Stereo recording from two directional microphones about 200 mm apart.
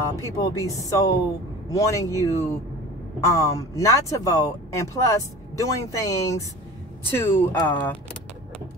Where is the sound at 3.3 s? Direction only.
15° left (ahead or behind).